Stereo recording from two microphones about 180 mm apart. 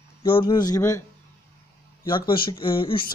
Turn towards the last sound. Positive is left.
turn(degrees=30)  # may be behind; listen again after turning